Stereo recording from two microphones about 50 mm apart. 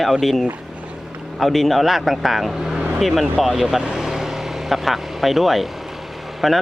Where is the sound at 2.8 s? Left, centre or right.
Right.